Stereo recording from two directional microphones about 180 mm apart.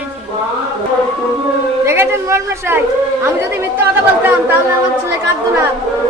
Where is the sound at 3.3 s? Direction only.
15° right (ahead or behind).